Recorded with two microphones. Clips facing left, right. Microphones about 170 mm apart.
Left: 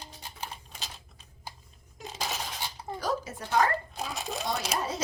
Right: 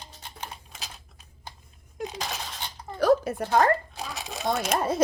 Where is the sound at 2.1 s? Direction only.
Centre (ahead or behind).